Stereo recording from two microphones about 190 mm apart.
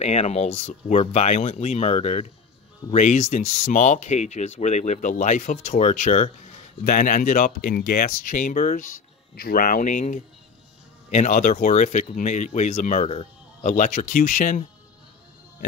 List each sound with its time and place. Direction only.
0.0 s speech: 35° left (ahead or behind)